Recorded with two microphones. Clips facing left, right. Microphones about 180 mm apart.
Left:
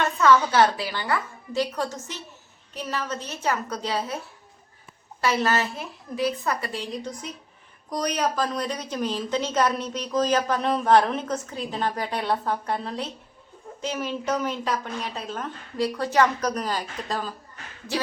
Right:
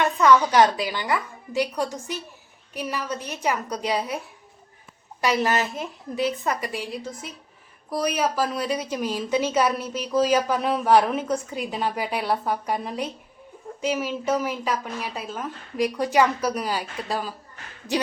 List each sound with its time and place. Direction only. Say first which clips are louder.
0.0 s a woman's voice: right 1 dB; 15° right (ahead or behind)
5.2 s a woman's voice: right 1 dB; 15° right (ahead or behind)